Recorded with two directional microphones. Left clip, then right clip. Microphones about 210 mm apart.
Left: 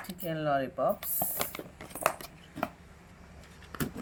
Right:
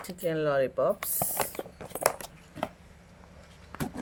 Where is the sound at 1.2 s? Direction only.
30° right (ahead or behind).